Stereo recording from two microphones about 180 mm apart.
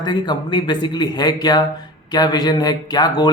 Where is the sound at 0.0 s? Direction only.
25° left (ahead or behind).